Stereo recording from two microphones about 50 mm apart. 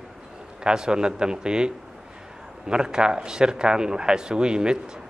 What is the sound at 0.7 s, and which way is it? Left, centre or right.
Speech, centre.